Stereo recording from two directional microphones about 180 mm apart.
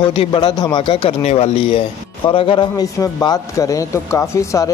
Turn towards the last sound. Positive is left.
turn(degrees=15)  # may be behind; listen again after turning